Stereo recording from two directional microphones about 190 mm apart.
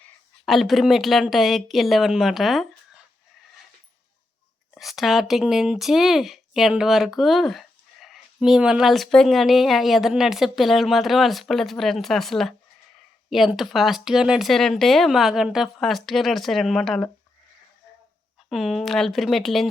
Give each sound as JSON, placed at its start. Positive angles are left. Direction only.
{"t": 0.4, "sound": "speech", "side_deg": 0}
{"t": 4.7, "sound": "speech", "side_deg": 0}
{"t": 18.4, "sound": "speech", "side_deg": 0}